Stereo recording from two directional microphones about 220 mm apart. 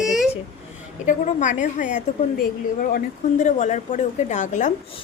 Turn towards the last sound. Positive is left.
turn(degrees=35)  # may be behind; listen again after turning